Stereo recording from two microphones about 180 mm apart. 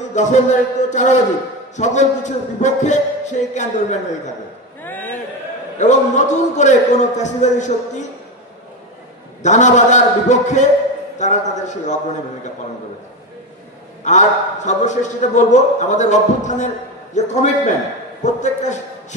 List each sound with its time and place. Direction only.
0.1 s a man's voice: 40° left (ahead or behind)
4.8 s a sound: 10° left (ahead or behind)
5.8 s a man's voice: 40° left (ahead or behind)
9.4 s a man's voice: 40° left (ahead or behind)
14.0 s a man's voice: 40° left (ahead or behind)